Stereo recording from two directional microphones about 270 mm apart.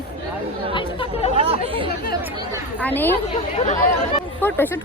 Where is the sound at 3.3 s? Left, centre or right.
Left.